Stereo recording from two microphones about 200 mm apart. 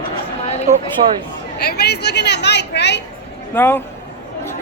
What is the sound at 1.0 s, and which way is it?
Speech, 35° right (ahead or behind).